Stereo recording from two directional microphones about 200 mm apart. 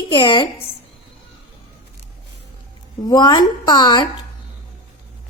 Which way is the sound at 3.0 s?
20° left (ahead or behind).